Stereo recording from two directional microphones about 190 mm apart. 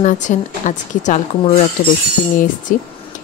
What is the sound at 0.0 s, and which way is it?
Speech, 40° left (ahead or behind).